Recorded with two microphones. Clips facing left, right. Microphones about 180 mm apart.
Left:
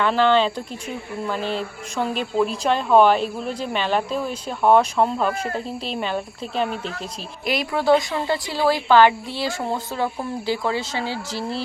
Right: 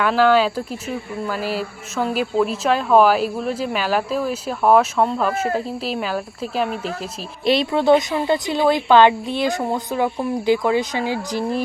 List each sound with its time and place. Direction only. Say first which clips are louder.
0.0 s speech: right 2 dB; 5° right (ahead or behind)
7.4 s a woman's voice: right 4 dB; 25° right (ahead or behind)